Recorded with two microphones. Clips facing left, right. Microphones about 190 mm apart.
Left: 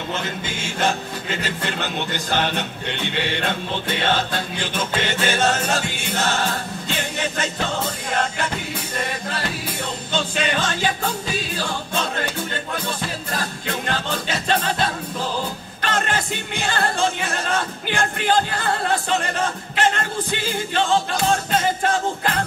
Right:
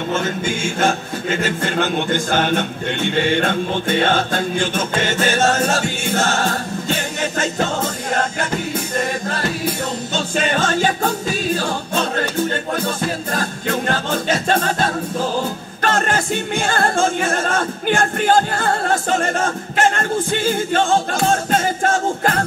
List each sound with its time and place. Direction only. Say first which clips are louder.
0.1 s a man's voice: right 8 dB; 45° right (ahead or behind)
10.1 s music: right 2 dB; 45° right (ahead or behind)
15.8 s a man's voice: right 5 dB; 45° right (ahead or behind)